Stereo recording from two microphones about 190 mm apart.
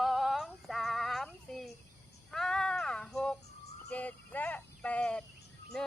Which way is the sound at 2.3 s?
5° left (ahead or behind).